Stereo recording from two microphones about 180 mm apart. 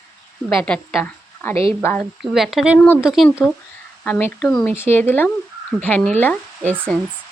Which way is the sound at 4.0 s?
10° left (ahead or behind).